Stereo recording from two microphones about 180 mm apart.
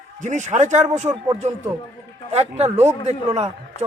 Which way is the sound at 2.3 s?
35° right (ahead or behind).